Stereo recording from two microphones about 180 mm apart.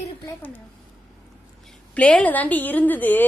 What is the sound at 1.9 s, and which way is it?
A woman's voice, 5° left (ahead or behind).